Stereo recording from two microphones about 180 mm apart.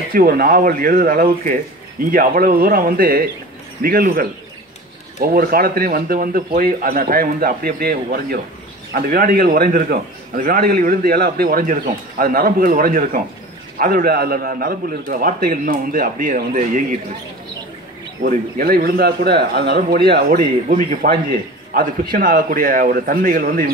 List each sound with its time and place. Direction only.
0.1 s a man's voice: 55° right (ahead or behind)
18.2 s a man's voice: 55° right (ahead or behind)